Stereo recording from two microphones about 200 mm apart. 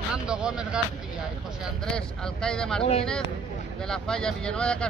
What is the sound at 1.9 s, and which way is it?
Speech, 5° left (ahead or behind).